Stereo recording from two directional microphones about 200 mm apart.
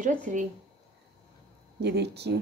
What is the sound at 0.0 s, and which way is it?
Speech, 40° right (ahead or behind).